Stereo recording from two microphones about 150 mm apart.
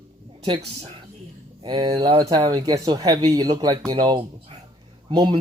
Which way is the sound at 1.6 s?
30° right (ahead or behind).